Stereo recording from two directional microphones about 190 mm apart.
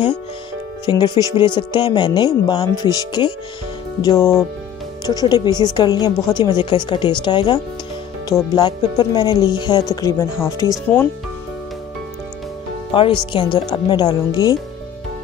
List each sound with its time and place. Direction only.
0.8 s speech: 20° left (ahead or behind)
12.9 s speech: 25° left (ahead or behind)